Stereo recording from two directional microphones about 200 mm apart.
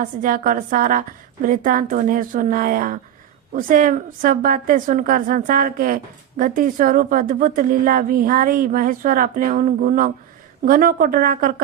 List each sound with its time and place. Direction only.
0.0 s a woman's voice: 45° right (ahead or behind)